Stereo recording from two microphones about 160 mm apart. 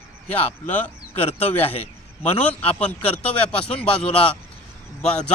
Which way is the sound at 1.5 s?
40° left (ahead or behind).